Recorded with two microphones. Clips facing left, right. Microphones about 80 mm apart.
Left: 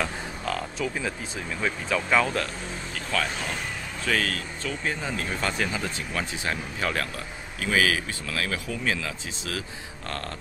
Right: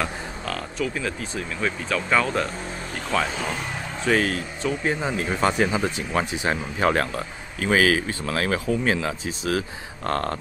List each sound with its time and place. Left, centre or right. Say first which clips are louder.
0.0 s a sound: right 1 dB; centre
1.6 s speech: right 1 dB; centre
3.1 s speech: right 4 dB; centre; by 10.3 s right